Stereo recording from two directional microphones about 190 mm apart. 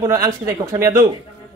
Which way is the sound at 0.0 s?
20° right (ahead or behind).